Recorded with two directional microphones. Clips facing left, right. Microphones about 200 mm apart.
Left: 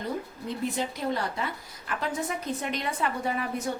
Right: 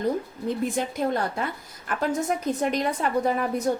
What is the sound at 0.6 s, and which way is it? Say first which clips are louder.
A woman's voice: right 3 dB; 50° right (ahead or behind).